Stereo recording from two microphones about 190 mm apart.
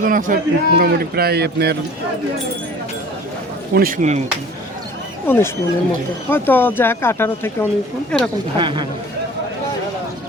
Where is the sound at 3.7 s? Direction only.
45° right (ahead or behind).